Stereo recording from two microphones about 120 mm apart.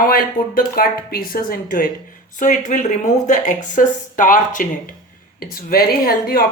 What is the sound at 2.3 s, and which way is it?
Speech, 90° left.